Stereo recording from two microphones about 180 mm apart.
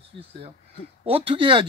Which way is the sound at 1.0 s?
30° right (ahead or behind).